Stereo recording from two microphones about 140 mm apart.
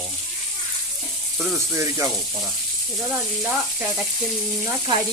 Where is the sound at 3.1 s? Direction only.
5° right (ahead or behind).